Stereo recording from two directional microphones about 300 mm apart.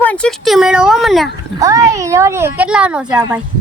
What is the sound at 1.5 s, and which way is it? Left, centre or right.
Speech, centre.